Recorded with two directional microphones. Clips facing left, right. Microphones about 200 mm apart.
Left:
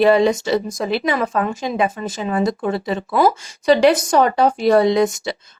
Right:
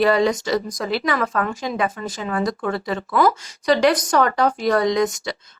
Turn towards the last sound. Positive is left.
turn(degrees=25)  # may be behind; listen again after turning